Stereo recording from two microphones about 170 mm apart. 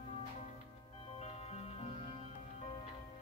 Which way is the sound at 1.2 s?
40° left (ahead or behind).